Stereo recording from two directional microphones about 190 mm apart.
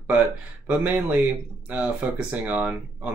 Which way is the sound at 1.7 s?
10° right (ahead or behind).